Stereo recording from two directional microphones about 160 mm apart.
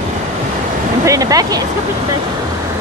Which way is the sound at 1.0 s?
20° right (ahead or behind).